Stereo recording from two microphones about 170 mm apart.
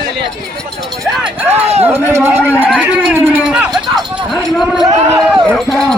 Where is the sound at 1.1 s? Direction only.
10° right (ahead or behind).